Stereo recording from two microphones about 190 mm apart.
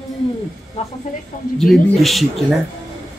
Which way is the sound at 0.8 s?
35° left (ahead or behind).